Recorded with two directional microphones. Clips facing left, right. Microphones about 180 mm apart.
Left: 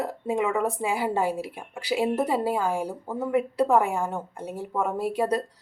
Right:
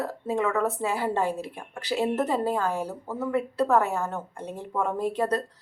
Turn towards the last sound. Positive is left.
turn(degrees=10)  # may be behind; listen again after turning